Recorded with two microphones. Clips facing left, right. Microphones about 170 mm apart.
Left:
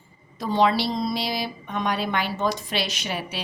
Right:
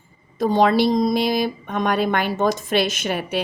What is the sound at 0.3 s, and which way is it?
A woman's voice, 45° right (ahead or behind).